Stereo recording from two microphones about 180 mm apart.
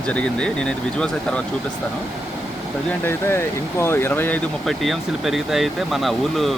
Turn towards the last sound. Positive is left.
turn(degrees=0)  # may be behind; listen again after turning